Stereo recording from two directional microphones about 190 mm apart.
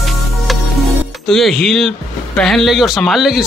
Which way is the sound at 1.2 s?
Centre (ahead or behind).